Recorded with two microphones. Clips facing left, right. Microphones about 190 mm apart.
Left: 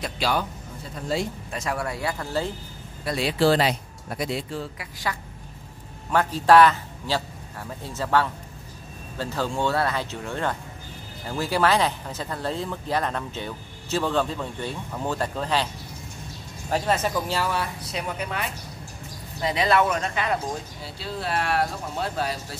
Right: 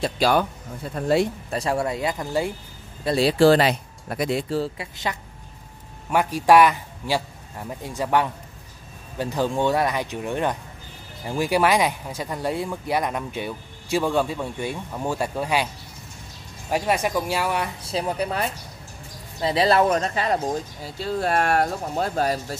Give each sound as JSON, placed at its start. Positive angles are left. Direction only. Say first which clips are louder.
{"t": 0.2, "sound": "speech", "louder": "right 5 dB", "side_deg": -55}
{"t": 1.5, "sound": "speech", "louder": "right 5 dB", "side_deg": -30}
{"t": 3.1, "sound": "speech", "louder": "right 6 dB", "side_deg": -35}
{"t": 3.3, "sound": "speech", "louder": "right 3 dB", "side_deg": -55}
{"t": 4.6, "sound": "speech", "louder": "right 7 dB", "side_deg": -25}
{"t": 6.0, "sound": "a man's voice", "louder": "right 1 dB", "side_deg": -10}
{"t": 16.7, "sound": "speech", "louder": "right 2 dB", "side_deg": -15}
{"t": 17.8, "sound": "speech", "louder": "right 5 dB", "side_deg": -30}
{"t": 20.8, "sound": "speech", "louder": "right 8 dB", "side_deg": -45}